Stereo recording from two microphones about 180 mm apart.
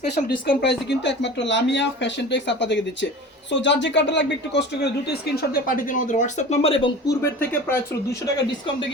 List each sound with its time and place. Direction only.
0.4 s speech: 70° left (ahead or behind); by 6.9 s 30° left (ahead or behind)
7.1 s speech: 10° left (ahead or behind)